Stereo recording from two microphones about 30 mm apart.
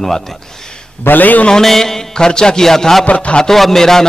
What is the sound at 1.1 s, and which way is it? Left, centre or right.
Speech, left.